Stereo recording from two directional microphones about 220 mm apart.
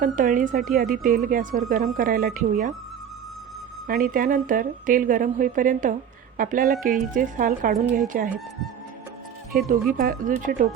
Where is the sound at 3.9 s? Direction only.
40° right (ahead or behind).